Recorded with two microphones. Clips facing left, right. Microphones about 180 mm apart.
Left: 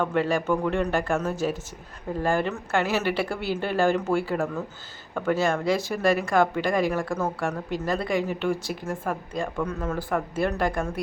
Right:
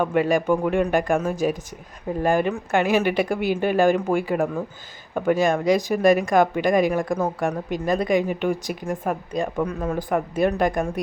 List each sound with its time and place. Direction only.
0.0 s speech: 15° right (ahead or behind)